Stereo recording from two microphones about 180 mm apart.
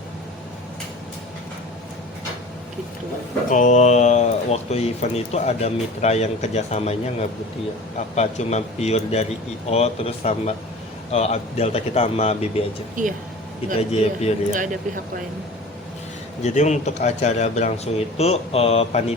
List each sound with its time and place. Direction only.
3.5 s speech: 45° left (ahead or behind)
13.0 s speech: 45° right (ahead or behind)
13.9 s speech: 35° left (ahead or behind)
14.5 s speech: 45° right (ahead or behind)
16.4 s speech: 40° left (ahead or behind)